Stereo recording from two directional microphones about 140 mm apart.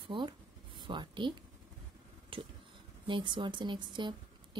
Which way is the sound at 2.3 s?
40° right (ahead or behind).